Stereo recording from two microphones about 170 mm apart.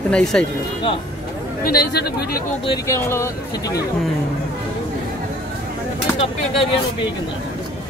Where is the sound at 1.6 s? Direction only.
65° left (ahead or behind).